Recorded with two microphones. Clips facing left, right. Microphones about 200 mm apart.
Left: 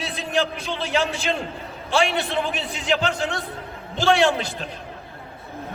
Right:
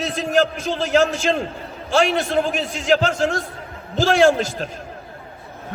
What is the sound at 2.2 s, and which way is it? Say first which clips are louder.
Speech: right 5 dB; 45° right (ahead or behind).